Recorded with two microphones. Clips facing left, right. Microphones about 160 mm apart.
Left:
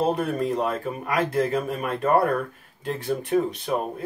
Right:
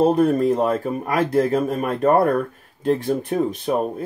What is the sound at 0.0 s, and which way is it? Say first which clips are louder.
Speech: right 7 dB; 40° right (ahead or behind).